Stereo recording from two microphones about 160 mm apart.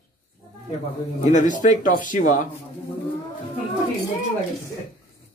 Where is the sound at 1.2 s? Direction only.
50° left (ahead or behind).